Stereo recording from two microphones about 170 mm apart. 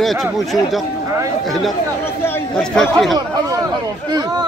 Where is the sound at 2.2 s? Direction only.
10° left (ahead or behind).